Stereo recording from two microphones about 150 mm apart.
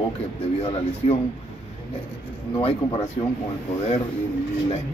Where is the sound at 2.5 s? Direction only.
40° left (ahead or behind).